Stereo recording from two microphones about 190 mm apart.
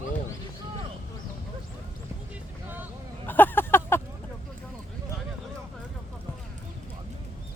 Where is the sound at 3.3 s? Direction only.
10° left (ahead or behind).